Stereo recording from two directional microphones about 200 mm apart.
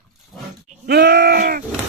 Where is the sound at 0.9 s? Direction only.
55° right (ahead or behind).